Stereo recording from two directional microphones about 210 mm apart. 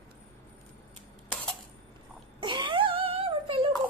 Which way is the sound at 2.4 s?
20° right (ahead or behind).